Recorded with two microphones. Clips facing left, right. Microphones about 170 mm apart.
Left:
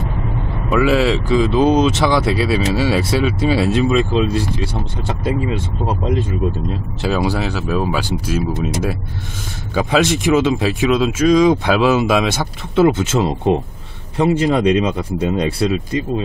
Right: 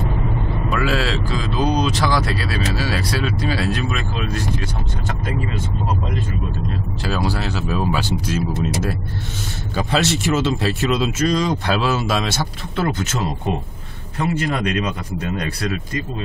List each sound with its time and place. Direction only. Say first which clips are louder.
0.8 s speech: left 9 dB; 20° left (ahead or behind)
7.0 s speech: left 5 dB; 15° left (ahead or behind)
13.0 s speech: left 7 dB; 25° left (ahead or behind)